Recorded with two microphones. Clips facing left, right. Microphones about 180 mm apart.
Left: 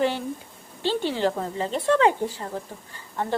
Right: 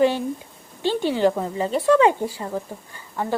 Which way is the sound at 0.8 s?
15° right (ahead or behind).